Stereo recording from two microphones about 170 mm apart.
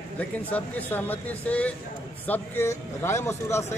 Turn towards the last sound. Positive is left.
turn(degrees=15)  # may be behind; listen again after turning